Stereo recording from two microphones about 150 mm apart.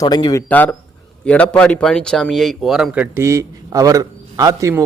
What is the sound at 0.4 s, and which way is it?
A man's voice, 10° left (ahead or behind).